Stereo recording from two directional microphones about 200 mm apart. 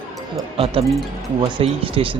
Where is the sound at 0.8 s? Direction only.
Centre (ahead or behind).